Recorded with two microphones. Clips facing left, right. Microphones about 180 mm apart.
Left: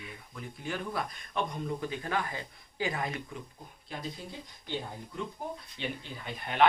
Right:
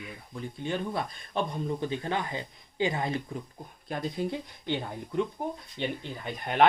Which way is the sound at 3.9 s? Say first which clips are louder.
Right 9 dB; 65° right (ahead or behind).